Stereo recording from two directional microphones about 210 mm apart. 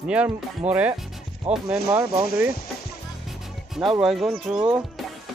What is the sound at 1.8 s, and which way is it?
Speech, 10° right (ahead or behind).